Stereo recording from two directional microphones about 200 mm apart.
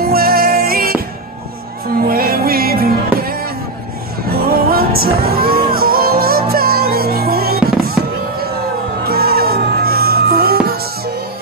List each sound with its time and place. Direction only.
0.1 s music: 50° right (ahead or behind)
2.0 s music: 45° right (ahead or behind)
9.0 s music: 50° right (ahead or behind)